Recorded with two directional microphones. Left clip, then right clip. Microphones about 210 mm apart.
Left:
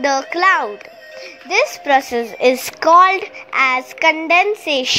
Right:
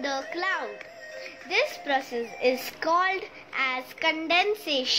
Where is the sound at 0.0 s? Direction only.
35° left (ahead or behind).